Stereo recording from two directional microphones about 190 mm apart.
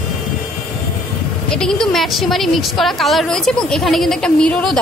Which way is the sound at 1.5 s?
5° left (ahead or behind).